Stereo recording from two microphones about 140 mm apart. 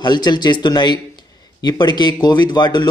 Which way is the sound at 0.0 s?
30° left (ahead or behind).